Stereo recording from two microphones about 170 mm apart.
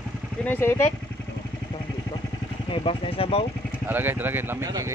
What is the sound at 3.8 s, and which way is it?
Speech, 10° right (ahead or behind).